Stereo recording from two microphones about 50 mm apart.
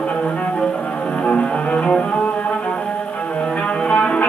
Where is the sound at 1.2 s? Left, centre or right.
Left.